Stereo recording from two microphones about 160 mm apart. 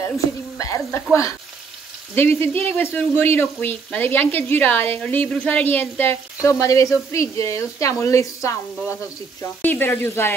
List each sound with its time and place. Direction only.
0.6 s speech: 20° left (ahead or behind)
2.1 s speech: 15° left (ahead or behind)